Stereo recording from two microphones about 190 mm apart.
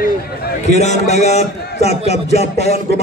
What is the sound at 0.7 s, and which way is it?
A man's voice, 35° left (ahead or behind).